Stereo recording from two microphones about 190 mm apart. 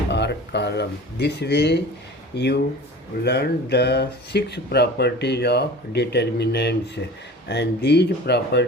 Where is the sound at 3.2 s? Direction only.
60° left (ahead or behind).